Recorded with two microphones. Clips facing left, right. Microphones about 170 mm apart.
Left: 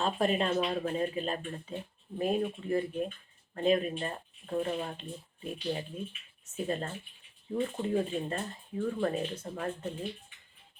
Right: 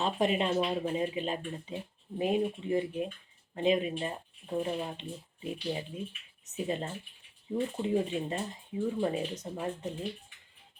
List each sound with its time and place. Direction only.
0.0 s speech: 20° right (ahead or behind)